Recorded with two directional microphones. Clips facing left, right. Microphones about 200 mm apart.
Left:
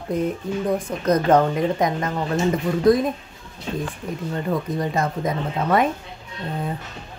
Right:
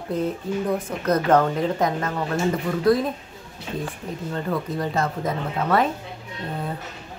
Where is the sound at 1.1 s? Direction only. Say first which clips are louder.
Left 2 dB; 15° left (ahead or behind).